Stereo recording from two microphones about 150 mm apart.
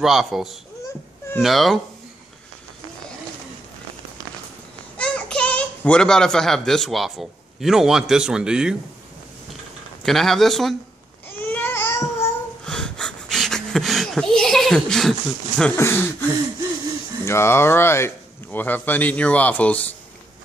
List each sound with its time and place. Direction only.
0.0 s speech: centre (ahead or behind)
4.9 s a child's voice: 5° left (ahead or behind)
10.0 s speech: centre (ahead or behind)
11.5 s babbling: 15° left (ahead or behind)
12.6 s wheeze: 5° left (ahead or behind)
15.8 s speech: 15° left (ahead or behind)